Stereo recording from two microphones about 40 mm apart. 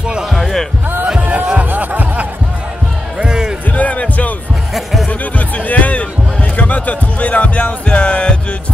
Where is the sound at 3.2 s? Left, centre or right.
Centre.